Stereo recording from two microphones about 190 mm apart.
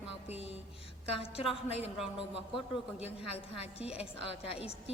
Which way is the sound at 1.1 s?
30° left (ahead or behind).